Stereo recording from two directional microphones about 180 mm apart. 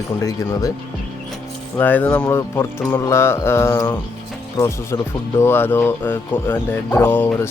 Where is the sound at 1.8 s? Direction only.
10° left (ahead or behind).